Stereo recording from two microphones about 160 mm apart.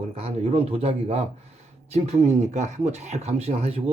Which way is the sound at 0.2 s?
40° right (ahead or behind).